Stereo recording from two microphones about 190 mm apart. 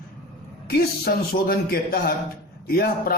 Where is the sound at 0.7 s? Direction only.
55° left (ahead or behind).